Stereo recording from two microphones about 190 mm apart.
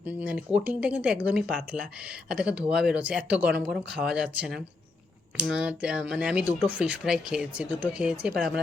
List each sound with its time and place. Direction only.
0.0 s speech: 5° right (ahead or behind)